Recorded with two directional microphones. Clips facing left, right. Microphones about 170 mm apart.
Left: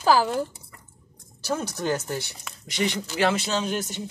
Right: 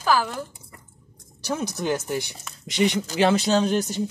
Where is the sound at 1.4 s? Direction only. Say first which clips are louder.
Right 1 dB; 10° right (ahead or behind).